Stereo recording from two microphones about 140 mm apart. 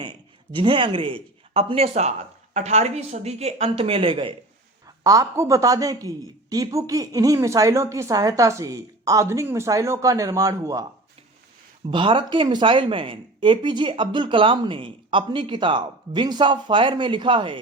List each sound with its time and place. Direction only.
0.0 s speech: 35° right (ahead or behind)
5.0 s a woman's voice: 25° right (ahead or behind)
11.9 s speech: 35° right (ahead or behind)